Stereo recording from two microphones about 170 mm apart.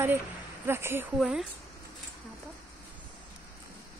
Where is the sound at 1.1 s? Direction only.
5° right (ahead or behind).